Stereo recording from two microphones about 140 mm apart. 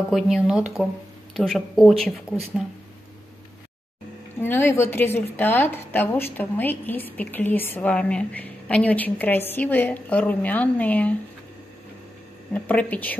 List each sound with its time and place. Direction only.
0.1 s speech: centre (ahead or behind)
4.4 s a woman's voice: 15° left (ahead or behind)
12.6 s a woman's voice: 10° left (ahead or behind)